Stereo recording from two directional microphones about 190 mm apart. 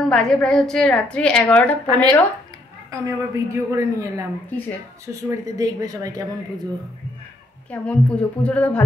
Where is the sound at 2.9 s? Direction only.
15° right (ahead or behind).